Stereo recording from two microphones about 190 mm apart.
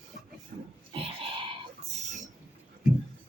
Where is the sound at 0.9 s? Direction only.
30° right (ahead or behind).